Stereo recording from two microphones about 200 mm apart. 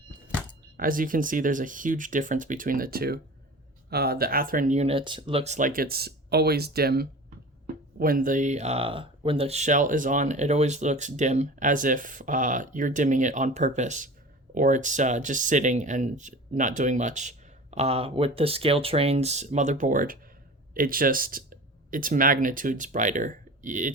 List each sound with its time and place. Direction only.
0.8 s speech: 45° right (ahead or behind)